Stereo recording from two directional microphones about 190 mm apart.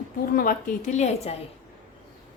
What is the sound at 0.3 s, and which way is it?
A woman's voice, 45° left (ahead or behind).